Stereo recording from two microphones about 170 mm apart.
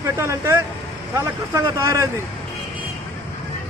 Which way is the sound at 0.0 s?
15° right (ahead or behind).